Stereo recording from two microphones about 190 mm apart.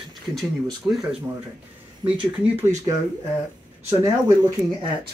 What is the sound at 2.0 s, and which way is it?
Speech, 25° right (ahead or behind).